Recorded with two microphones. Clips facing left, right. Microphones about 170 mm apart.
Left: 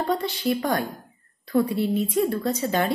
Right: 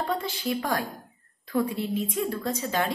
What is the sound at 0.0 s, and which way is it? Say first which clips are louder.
A woman's voice: left 4 dB; centre (ahead or behind).